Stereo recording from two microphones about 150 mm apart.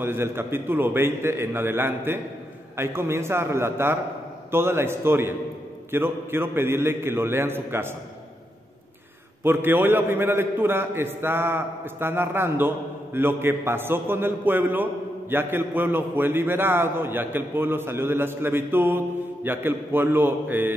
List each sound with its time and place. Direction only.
0.0 s a man's voice: 15° right (ahead or behind)
9.4 s a man's voice: 15° right (ahead or behind)